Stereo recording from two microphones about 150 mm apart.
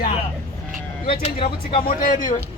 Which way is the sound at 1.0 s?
35° left (ahead or behind).